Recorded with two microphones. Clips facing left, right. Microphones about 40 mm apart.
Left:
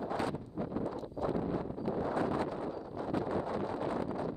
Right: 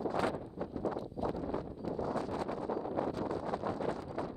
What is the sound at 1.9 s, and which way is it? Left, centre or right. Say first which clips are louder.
Wind noise: left 3 dB; left.